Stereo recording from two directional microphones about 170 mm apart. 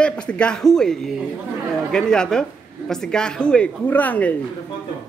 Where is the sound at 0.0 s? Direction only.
5° left (ahead or behind).